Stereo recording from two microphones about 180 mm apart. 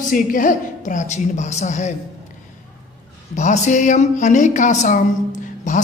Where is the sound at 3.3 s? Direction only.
40° left (ahead or behind).